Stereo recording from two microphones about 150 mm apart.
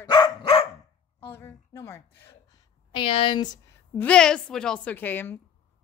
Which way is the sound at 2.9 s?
35° left (ahead or behind).